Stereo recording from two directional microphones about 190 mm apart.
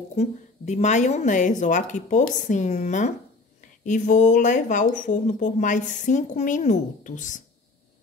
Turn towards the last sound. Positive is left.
turn(degrees=40)  # may be behind; listen again after turning